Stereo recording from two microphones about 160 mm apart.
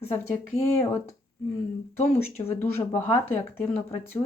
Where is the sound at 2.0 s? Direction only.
45° left (ahead or behind).